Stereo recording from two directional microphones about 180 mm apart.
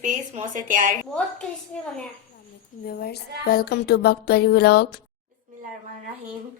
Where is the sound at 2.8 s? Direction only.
60° left (ahead or behind).